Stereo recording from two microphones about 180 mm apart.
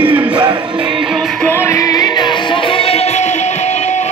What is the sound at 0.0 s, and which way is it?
Music, 25° right (ahead or behind).